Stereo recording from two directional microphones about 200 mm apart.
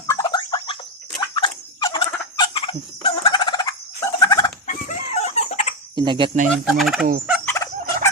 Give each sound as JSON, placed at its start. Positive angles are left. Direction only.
{"t": 0.1, "sound": "a sound", "side_deg": 20}
{"t": 1.4, "sound": "turkey", "side_deg": 25}
{"t": 4.6, "sound": "chicken", "side_deg": 40}
{"t": 6.0, "sound": "speech", "side_deg": -25}
{"t": 6.5, "sound": "gobble", "side_deg": 0}
{"t": 7.0, "sound": "turkey", "side_deg": -45}
{"t": 7.4, "sound": "turkey", "side_deg": 15}